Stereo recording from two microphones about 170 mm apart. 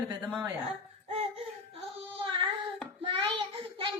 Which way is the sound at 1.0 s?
35° right (ahead or behind).